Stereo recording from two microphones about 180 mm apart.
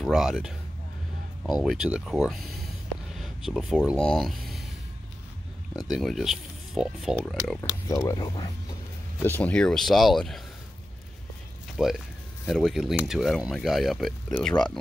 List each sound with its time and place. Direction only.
0.0 s speech: centre (ahead or behind)
1.6 s speech: 5° right (ahead or behind)
5.7 s speech: centre (ahead or behind)
8.0 s speech: 25° left (ahead or behind)
9.2 s speech: 10° left (ahead or behind)
11.7 s speech: centre (ahead or behind)